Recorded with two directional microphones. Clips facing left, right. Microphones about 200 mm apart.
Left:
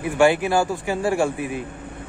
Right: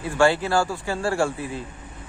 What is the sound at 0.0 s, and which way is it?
Speech, 15° left (ahead or behind).